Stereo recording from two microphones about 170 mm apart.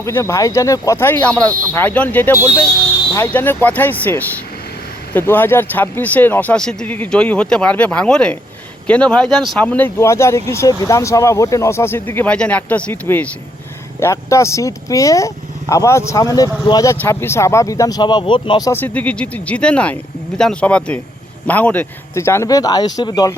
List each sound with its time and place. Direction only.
0.0 s speech: 15° left (ahead or behind)
18.7 s speech: 10° left (ahead or behind)